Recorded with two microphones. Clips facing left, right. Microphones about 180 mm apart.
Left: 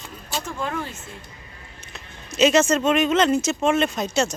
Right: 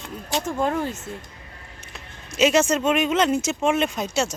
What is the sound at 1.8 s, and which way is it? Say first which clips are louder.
Speech: left 2 dB; 10° right (ahead or behind).